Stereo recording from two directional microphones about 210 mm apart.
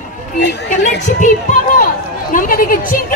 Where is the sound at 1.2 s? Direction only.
35° left (ahead or behind).